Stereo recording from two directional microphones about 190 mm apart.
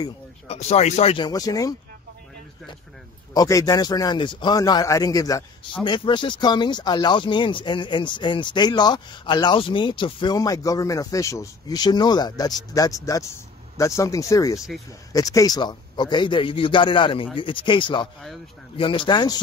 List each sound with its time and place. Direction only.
0.5 s speech: 35° left (ahead or behind); by 1.8 s 20° left (ahead or behind)
3.3 s speech: 20° left (ahead or behind)